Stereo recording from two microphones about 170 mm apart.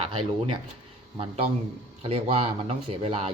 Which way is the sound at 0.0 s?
30° right (ahead or behind).